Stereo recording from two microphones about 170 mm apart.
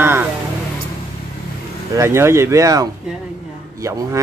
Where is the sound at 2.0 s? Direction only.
15° right (ahead or behind).